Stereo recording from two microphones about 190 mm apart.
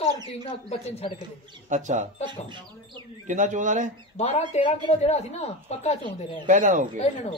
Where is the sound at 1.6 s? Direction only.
40° right (ahead or behind).